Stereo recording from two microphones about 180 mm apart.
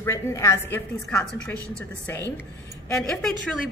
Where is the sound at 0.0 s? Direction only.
15° left (ahead or behind).